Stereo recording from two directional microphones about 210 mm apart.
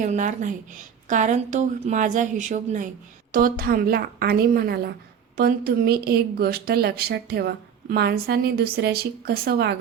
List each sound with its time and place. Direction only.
0.0 s a woman's voice: 35° right (ahead or behind)